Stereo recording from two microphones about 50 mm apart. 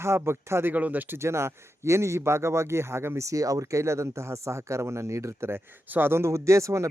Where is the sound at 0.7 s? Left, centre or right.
Right.